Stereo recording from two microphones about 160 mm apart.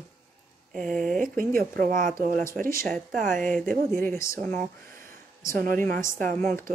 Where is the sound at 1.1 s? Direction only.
60° right (ahead or behind).